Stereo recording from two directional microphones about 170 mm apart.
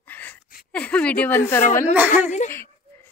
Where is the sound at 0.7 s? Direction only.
5° left (ahead or behind).